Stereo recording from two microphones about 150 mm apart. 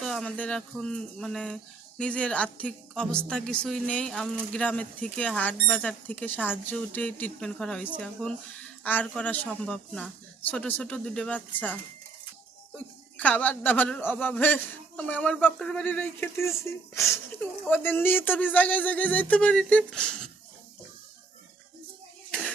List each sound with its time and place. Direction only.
0.0 s a woman's voice: 5° left (ahead or behind)